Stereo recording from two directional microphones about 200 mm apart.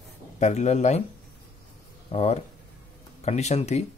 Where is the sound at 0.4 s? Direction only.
35° left (ahead or behind).